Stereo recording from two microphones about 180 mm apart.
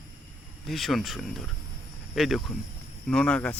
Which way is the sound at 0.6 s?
Centre (ahead or behind).